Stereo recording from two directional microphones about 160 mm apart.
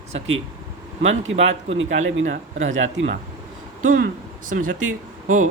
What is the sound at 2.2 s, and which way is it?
Speech, 55° right (ahead or behind).